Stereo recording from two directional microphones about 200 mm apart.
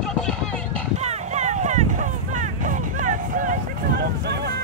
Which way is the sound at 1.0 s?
35° right (ahead or behind).